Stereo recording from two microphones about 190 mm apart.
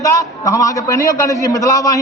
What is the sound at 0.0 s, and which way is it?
A man's voice, 20° left (ahead or behind).